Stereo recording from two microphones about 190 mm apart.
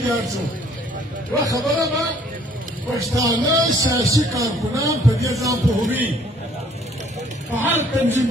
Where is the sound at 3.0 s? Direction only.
15° right (ahead or behind).